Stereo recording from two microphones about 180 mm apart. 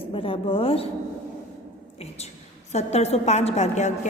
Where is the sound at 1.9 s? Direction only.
35° left (ahead or behind).